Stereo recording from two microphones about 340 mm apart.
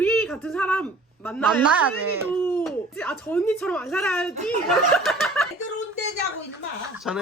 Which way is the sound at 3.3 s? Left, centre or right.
Centre.